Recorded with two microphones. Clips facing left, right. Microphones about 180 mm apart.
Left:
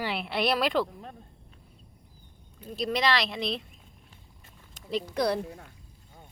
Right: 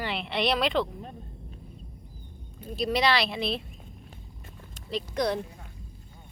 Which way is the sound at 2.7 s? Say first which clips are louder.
Right 2 dB; centre (ahead or behind).